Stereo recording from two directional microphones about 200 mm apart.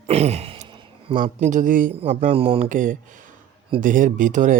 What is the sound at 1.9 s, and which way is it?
Speech, 30° right (ahead or behind).